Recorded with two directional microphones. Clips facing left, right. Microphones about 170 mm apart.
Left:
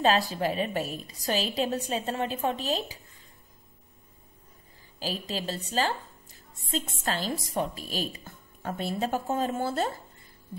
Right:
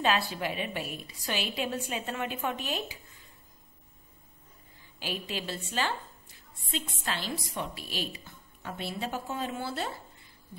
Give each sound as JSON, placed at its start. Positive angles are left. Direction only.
{"t": 0.0, "sound": "a woman's voice", "side_deg": 40}
{"t": 4.9, "sound": "a woman's voice", "side_deg": 35}